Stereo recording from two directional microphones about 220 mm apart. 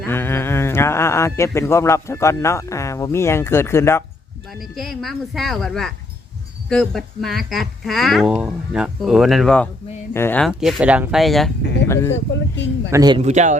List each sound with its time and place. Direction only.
0.0 s speech: 10° left (ahead or behind)
4.6 s speech: centre (ahead or behind)
11.9 s speech: 10° left (ahead or behind)
12.1 s speech: 55° left (ahead or behind)
12.9 s speech: 20° right (ahead or behind)
13.2 s a man's voice: 30° right (ahead or behind)